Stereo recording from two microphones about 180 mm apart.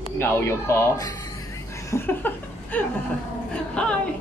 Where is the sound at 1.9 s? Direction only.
10° left (ahead or behind).